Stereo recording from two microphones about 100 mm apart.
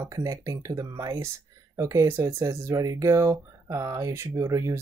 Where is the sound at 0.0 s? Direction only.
35° right (ahead or behind).